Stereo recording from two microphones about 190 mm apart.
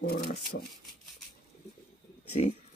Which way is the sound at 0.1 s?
55° left (ahead or behind).